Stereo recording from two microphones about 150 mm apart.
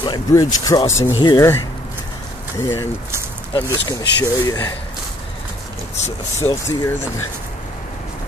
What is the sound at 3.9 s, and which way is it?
Speech, 25° left (ahead or behind).